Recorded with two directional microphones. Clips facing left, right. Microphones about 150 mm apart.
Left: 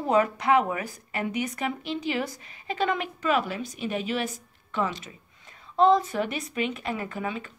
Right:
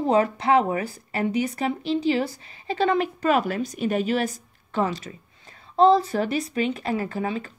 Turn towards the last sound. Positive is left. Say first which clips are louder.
# right 4 dB
turn(degrees=-35)  # may be behind; listen again after turning